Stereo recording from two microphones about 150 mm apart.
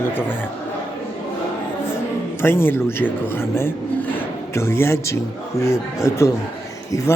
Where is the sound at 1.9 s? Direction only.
15° left (ahead or behind).